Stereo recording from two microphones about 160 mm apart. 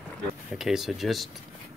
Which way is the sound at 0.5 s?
5° right (ahead or behind).